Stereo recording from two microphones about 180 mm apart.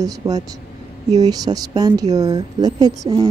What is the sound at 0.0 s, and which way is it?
Speech, 20° right (ahead or behind).